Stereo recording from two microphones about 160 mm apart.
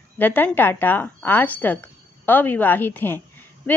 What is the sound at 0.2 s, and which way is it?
A woman's voice, 10° left (ahead or behind).